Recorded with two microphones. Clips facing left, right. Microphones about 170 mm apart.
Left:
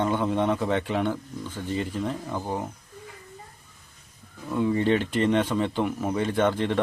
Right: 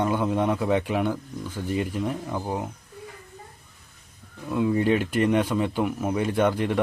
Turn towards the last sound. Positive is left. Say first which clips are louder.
# right 1 dB
turn(degrees=-10)  # may be behind; listen again after turning